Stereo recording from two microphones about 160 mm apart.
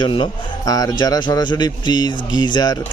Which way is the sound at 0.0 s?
30° left (ahead or behind).